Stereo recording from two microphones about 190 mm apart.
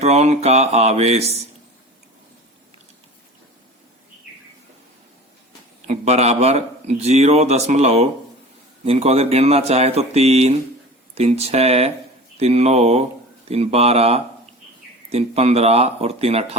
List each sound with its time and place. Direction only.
0.0 s speech: 35° right (ahead or behind)
5.9 s speech: 35° right (ahead or behind)